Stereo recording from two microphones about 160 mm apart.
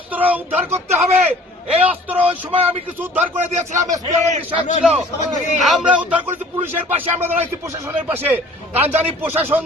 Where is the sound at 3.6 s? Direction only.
50° right (ahead or behind).